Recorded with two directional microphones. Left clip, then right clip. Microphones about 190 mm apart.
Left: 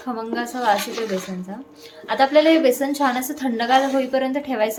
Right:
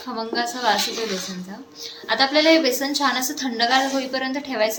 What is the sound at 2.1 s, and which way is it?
A woman's voice, 45° left (ahead or behind).